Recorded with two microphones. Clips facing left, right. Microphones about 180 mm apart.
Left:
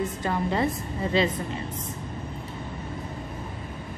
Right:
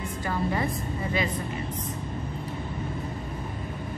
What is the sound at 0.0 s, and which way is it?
Speech, 20° left (ahead or behind).